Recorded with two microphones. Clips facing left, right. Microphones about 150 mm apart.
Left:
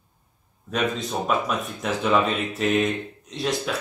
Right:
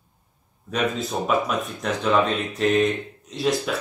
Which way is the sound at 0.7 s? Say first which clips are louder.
Right 1 dB; centre (ahead or behind).